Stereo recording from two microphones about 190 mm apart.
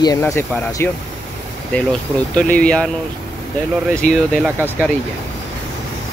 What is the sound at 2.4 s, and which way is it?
Speech, 5° left (ahead or behind).